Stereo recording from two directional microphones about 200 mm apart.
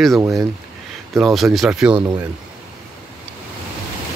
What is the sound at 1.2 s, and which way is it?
Speech, centre (ahead or behind).